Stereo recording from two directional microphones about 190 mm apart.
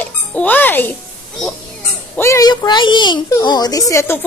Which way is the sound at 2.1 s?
15° left (ahead or behind).